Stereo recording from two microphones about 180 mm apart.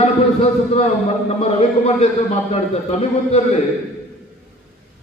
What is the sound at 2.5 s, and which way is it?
A man's voice, 35° left (ahead or behind).